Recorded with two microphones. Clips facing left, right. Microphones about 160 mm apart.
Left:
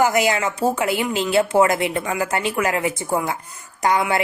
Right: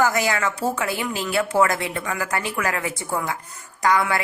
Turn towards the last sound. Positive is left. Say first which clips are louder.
# left 1 dB
turn(degrees=25)  # may be behind; listen again after turning